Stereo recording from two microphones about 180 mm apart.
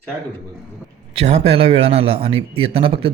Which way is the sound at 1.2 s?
35° right (ahead or behind).